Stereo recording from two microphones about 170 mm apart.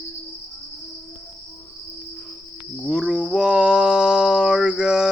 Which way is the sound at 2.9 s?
5° right (ahead or behind).